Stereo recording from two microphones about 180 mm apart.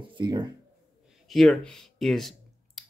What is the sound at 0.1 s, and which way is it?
Speech, 25° right (ahead or behind).